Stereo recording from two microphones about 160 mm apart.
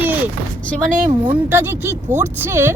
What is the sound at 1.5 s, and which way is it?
Speech, 15° right (ahead or behind).